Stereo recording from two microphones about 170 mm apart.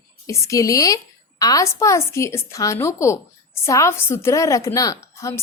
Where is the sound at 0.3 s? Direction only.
20° left (ahead or behind).